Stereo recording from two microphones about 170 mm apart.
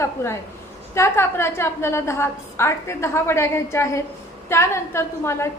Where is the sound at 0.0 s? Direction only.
15° left (ahead or behind).